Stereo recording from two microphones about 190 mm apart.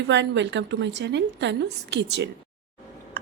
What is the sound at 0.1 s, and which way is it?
A woman's voice, 70° right (ahead or behind).